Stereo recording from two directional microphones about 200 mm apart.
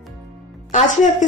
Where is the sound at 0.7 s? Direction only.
40° left (ahead or behind).